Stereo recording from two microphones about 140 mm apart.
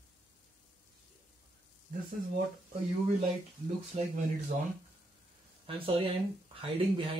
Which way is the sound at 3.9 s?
55° right (ahead or behind).